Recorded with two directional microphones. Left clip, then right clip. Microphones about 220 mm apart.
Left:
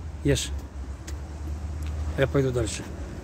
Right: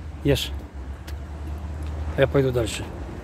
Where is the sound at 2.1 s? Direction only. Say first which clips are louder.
Right 4 dB; centre (ahead or behind).